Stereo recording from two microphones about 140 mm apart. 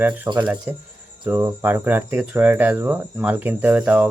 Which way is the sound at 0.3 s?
30° right (ahead or behind).